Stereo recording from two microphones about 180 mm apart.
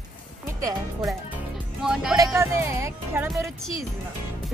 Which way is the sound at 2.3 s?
15° right (ahead or behind).